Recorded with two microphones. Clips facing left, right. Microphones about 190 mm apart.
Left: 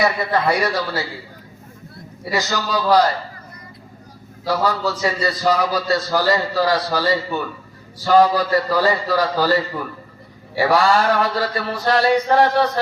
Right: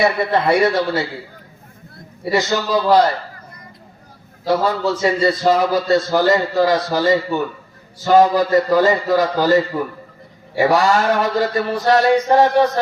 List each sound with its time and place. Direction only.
0.0 s mantra: 25° right (ahead or behind)
2.3 s mantra: 25° right (ahead or behind)
4.4 s mantra: 25° right (ahead or behind)
10.6 s mantra: 20° right (ahead or behind)